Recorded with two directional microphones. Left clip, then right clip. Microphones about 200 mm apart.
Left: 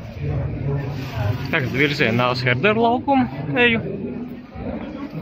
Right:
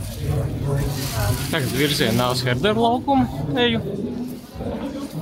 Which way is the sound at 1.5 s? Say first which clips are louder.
Left 2 dB; 10° right (ahead or behind).